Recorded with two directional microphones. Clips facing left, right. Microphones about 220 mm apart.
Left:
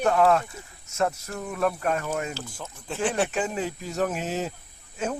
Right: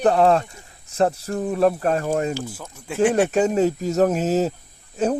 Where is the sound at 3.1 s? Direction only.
40° right (ahead or behind).